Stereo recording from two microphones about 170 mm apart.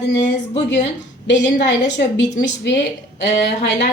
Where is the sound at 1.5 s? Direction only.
90° left.